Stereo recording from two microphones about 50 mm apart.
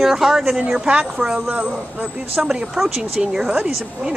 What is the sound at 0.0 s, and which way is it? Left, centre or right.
Speech, centre.